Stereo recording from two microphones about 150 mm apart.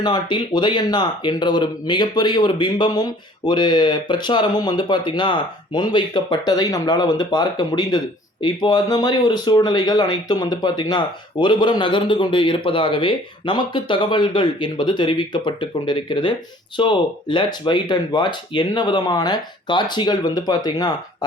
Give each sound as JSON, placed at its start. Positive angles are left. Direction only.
{"t": 0.0, "sound": "speech", "side_deg": 30}